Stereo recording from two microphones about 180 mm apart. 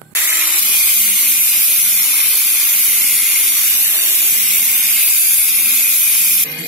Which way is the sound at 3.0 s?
Centre (ahead or behind).